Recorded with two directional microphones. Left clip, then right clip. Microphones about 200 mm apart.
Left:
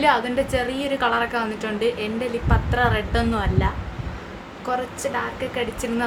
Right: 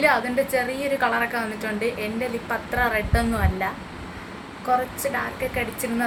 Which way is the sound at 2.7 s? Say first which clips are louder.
Left 1 dB; 20° left (ahead or behind).